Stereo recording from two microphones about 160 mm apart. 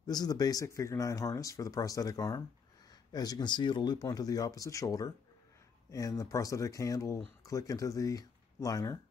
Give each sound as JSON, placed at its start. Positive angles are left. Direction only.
{"t": 0.0, "sound": "speech", "side_deg": 25}